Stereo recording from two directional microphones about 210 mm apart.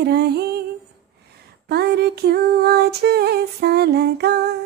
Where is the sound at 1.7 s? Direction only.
50° right (ahead or behind).